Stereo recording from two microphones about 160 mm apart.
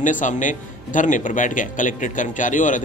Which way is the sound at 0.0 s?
55° left (ahead or behind).